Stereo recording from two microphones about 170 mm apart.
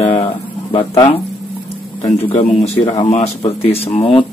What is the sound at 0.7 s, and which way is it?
Speech, 30° left (ahead or behind).